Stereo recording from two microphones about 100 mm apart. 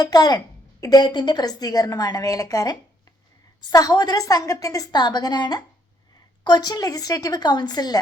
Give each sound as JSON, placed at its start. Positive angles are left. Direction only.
{"t": 0.0, "sound": "a woman's voice", "side_deg": 40}